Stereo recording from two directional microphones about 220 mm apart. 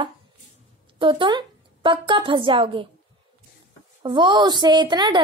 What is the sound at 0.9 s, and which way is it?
A woman's voice, 20° right (ahead or behind).